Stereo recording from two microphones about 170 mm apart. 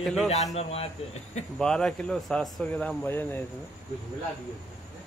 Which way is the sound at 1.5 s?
5° left (ahead or behind).